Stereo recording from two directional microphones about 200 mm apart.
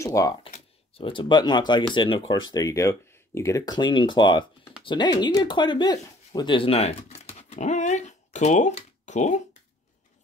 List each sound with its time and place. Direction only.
0.0 s speech: 15° left (ahead or behind)
0.5 s speech: 30° left (ahead or behind)